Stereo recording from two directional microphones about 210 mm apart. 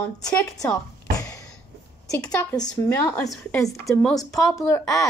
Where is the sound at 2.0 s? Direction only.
15° left (ahead or behind).